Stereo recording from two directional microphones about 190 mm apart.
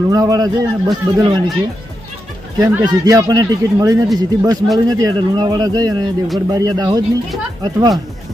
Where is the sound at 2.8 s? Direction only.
20° right (ahead or behind).